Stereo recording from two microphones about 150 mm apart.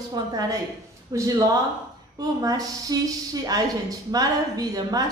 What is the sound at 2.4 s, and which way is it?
A woman's voice, 25° right (ahead or behind).